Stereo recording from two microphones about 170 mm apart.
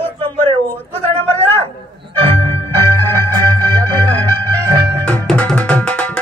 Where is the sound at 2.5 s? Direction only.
15° left (ahead or behind).